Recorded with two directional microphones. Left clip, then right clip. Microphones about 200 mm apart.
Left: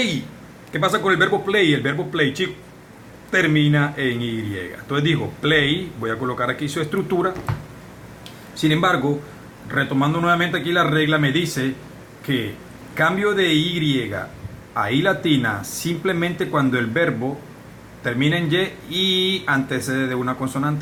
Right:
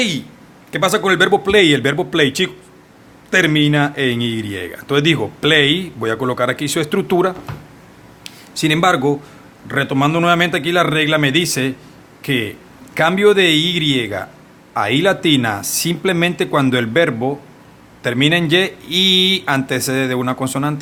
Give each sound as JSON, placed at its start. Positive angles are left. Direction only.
{"t": 0.7, "sound": "speech", "side_deg": -50}
{"t": 8.2, "sound": "a sound", "side_deg": -50}
{"t": 9.6, "sound": "speech", "side_deg": -50}